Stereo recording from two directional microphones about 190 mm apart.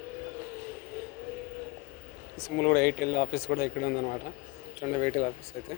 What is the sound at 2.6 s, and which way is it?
Speech, 55° left (ahead or behind).